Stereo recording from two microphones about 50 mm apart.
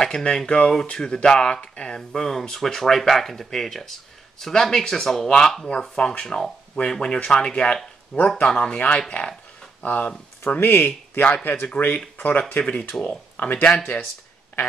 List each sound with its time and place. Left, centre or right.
0.0 s speech: centre
6.2 s speech: centre
6.7 s speech: centre
8.7 s speech: left
10.6 s speech: left
10.9 s a man's voice: left
12.4 s a man's voice: left